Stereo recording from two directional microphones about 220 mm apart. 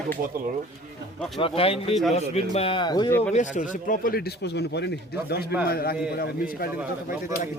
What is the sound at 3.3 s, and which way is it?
Speech, 35° left (ahead or behind).